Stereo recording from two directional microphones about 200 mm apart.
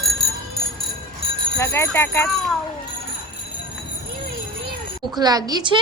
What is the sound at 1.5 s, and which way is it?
Speech, 15° left (ahead or behind).